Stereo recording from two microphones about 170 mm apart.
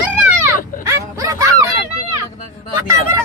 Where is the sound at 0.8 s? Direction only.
20° right (ahead or behind).